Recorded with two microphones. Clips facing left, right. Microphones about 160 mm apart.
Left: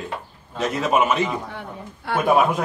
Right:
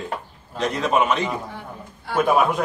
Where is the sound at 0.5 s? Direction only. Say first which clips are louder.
Even; 5° left (ahead or behind).